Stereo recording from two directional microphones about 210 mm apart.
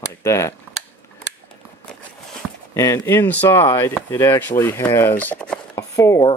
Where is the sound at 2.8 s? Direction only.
15° left (ahead or behind).